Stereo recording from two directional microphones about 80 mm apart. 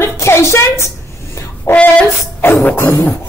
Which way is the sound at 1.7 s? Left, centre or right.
Left.